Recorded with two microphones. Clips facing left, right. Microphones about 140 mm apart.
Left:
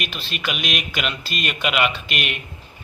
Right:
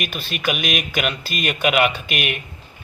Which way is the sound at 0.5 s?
Centre (ahead or behind).